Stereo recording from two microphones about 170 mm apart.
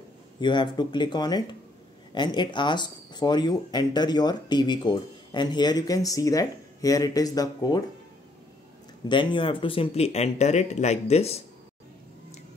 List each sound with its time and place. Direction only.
0.4 s speech: 25° left (ahead or behind)
9.1 s speech: 30° left (ahead or behind)